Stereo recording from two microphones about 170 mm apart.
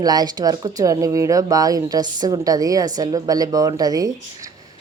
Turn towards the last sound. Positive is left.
turn(degrees=-20)  # may be behind; listen again after turning